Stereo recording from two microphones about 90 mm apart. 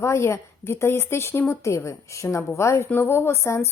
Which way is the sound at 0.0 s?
30° left (ahead or behind).